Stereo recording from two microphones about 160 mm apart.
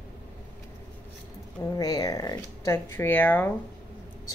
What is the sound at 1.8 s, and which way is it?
Speech, 25° left (ahead or behind).